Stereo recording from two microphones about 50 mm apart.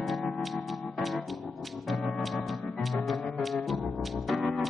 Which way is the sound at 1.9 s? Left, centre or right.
Centre.